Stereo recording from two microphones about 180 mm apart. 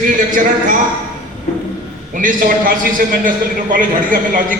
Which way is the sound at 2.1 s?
50° right (ahead or behind).